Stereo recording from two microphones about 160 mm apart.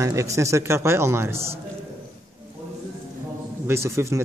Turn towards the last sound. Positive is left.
turn(degrees=-15)  # may be behind; listen again after turning